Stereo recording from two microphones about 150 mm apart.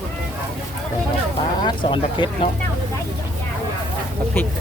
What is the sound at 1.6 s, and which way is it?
Speech, 30° left (ahead or behind).